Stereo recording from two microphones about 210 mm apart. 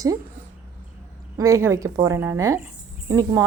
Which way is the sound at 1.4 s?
15° right (ahead or behind).